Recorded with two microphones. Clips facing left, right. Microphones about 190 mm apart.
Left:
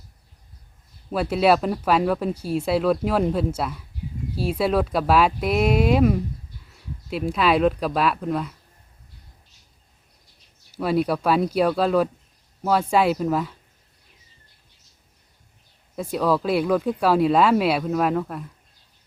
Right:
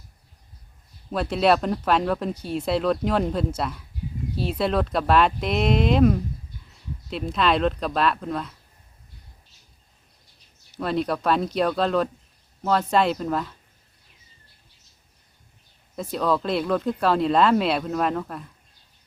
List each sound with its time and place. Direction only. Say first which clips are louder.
1.1 s speech: left 2 dB; 5° left (ahead or behind)
10.8 s speech: left 3 dB; 10° left (ahead or behind)
16.0 s speech: left 2 dB; 10° left (ahead or behind)